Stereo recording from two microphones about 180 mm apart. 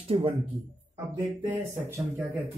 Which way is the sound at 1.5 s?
10° right (ahead or behind).